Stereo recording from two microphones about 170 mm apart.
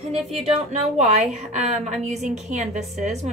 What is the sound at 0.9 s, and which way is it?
A woman's voice, 40° right (ahead or behind).